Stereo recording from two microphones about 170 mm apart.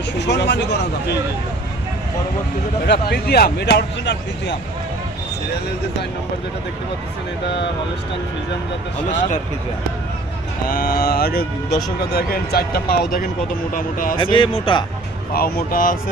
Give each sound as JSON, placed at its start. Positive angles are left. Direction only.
{"t": 0.2, "sound": "speech", "side_deg": 90}
{"t": 2.8, "sound": "speech", "side_deg": 75}
{"t": 10.7, "sound": "speech", "side_deg": 60}
{"t": 14.2, "sound": "speech", "side_deg": 30}
{"t": 15.4, "sound": "speech", "side_deg": 60}